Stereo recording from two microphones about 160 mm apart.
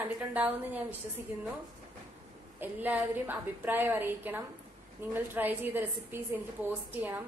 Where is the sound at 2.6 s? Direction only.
10° right (ahead or behind).